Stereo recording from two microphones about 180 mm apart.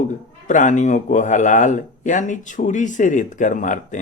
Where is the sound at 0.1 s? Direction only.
45° left (ahead or behind).